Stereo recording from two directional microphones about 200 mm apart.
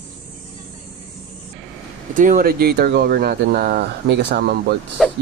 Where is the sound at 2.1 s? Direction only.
40° right (ahead or behind).